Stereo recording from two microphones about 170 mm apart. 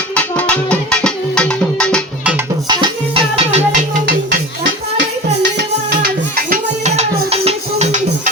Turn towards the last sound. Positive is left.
turn(degrees=-40)  # may be behind; listen again after turning